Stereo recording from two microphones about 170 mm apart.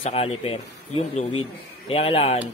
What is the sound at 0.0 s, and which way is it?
Speech, 35° left (ahead or behind).